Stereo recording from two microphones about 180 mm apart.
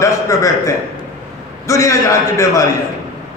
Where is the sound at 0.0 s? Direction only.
15° left (ahead or behind).